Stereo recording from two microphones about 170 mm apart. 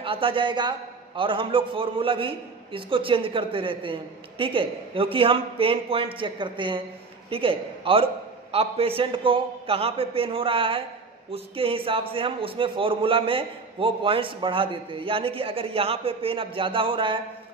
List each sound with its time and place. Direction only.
0.0 s a man's voice: 30° right (ahead or behind)